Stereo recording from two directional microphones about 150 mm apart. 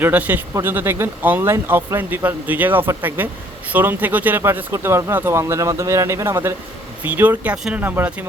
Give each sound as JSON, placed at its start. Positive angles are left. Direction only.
{"t": 0.0, "sound": "speech", "side_deg": -10}